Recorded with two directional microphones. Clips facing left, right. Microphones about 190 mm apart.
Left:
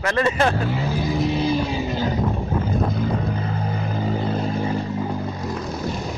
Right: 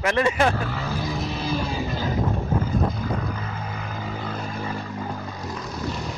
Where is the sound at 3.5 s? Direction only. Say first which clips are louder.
Left 7 dB; 35° left (ahead or behind).